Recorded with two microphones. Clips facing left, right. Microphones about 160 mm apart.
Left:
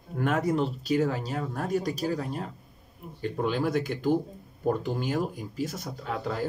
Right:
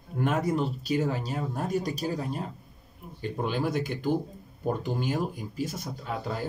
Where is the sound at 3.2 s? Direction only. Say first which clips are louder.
Left 2 dB; 15° right (ahead or behind).